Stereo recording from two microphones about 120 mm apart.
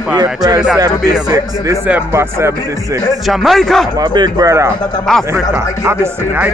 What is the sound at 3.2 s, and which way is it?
Speech, centre (ahead or behind).